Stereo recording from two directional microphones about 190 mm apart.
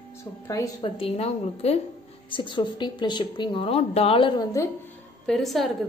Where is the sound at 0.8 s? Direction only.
30° left (ahead or behind).